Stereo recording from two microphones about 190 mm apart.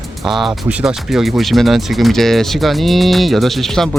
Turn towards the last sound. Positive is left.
turn(degrees=0)  # may be behind; listen again after turning